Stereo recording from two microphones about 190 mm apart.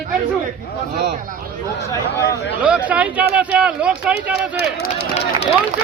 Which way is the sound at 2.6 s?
5° right (ahead or behind).